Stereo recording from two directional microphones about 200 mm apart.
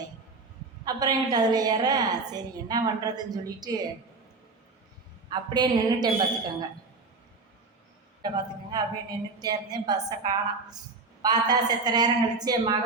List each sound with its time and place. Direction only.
0.9 s a woman's voice: 20° right (ahead or behind)
5.3 s a woman's voice: 20° right (ahead or behind)
8.7 s a woman's voice: 20° right (ahead or behind)